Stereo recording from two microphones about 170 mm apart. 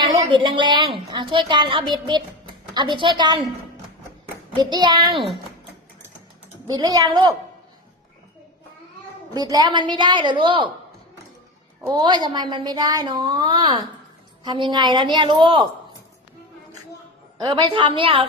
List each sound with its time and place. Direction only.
0.0 s a woman's voice: 30° right (ahead or behind)
4.5 s a woman's voice: 25° right (ahead or behind)
6.7 s a woman's voice: 25° right (ahead or behind)
9.3 s a woman's voice: 25° right (ahead or behind)
11.9 s a woman's voice: 25° right (ahead or behind)
17.3 s a woman's voice: 25° right (ahead or behind)